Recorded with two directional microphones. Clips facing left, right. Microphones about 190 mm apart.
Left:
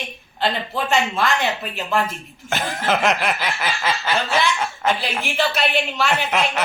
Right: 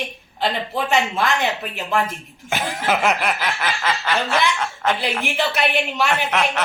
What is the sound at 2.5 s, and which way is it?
A man's voice, 10° right (ahead or behind).